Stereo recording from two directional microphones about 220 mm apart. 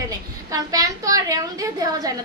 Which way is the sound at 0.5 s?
15° right (ahead or behind).